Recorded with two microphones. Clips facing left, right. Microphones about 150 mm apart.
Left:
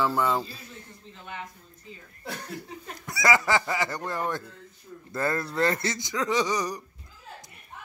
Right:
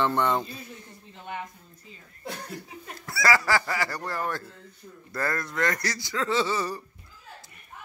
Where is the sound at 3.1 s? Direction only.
20° left (ahead or behind).